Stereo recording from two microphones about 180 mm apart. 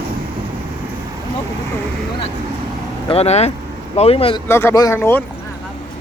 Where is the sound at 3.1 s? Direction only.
35° left (ahead or behind).